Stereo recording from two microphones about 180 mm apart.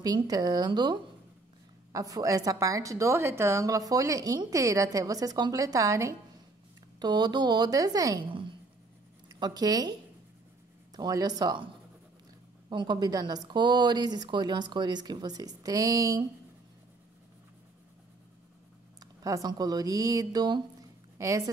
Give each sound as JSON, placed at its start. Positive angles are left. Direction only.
{"t": 0.0, "sound": "a woman's voice", "side_deg": -20}
{"t": 11.0, "sound": "speech", "side_deg": -20}
{"t": 19.2, "sound": "a woman's voice", "side_deg": -20}